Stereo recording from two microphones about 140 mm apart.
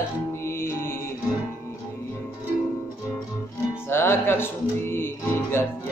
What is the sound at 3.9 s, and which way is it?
Music, 15° left (ahead or behind).